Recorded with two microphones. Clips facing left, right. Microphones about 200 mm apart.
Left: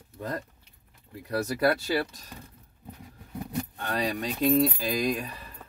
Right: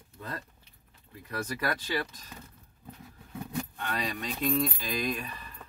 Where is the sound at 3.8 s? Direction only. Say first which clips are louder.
Left 7 dB; 35° left (ahead or behind).